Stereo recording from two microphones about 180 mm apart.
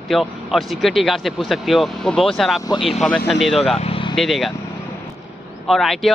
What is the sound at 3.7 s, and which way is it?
Vehicle, 30° left (ahead or behind).